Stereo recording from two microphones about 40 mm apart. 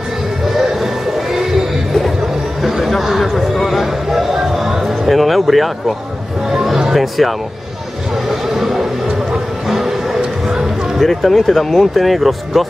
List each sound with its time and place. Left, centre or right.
0.6 s music: centre
2.6 s a sound: centre
6.5 s music: centre
8.5 s a sound: centre
9.7 s music: centre
11.0 s speech: centre